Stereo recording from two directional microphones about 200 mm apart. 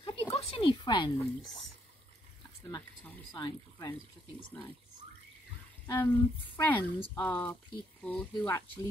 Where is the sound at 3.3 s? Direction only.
20° left (ahead or behind).